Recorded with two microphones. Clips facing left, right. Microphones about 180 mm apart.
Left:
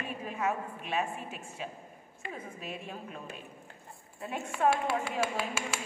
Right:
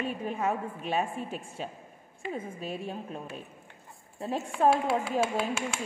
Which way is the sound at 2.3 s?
30° right (ahead or behind).